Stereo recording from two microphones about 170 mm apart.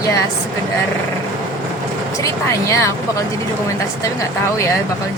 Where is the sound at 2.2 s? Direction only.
20° left (ahead or behind).